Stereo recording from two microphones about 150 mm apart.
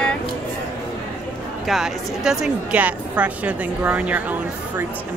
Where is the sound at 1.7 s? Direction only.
5° right (ahead or behind).